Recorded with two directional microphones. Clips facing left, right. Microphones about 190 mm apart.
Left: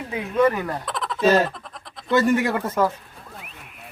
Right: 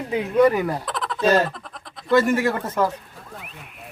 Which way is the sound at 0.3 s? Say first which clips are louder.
Right 3 dB; 15° right (ahead or behind).